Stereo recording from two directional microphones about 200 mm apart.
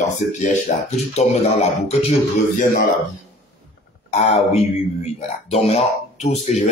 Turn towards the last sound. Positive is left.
turn(degrees=35)  # may be behind; listen again after turning